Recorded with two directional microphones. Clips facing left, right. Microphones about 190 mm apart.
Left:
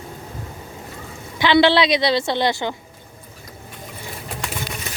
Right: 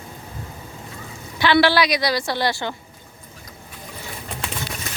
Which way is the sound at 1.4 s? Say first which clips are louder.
Left 2 dB; 20° left (ahead or behind).